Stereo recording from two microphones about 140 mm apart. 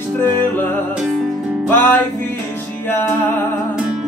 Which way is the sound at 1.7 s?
15° left (ahead or behind).